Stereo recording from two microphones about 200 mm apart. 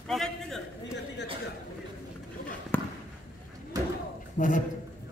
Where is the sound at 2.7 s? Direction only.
10° left (ahead or behind).